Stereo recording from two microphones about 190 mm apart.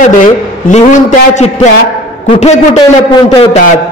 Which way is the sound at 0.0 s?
40° left (ahead or behind).